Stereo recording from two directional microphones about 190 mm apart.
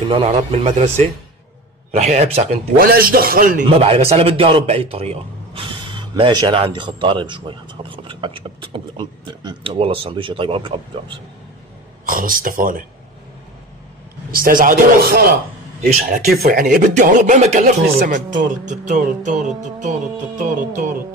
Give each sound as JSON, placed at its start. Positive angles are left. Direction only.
{"t": 0.1, "sound": "speech", "side_deg": -30}
{"t": 2.8, "sound": "a man's voice", "side_deg": -50}
{"t": 3.6, "sound": "a man's voice", "side_deg": -30}
{"t": 12.1, "sound": "a man's voice", "side_deg": -50}
{"t": 14.3, "sound": "a man's voice", "side_deg": -50}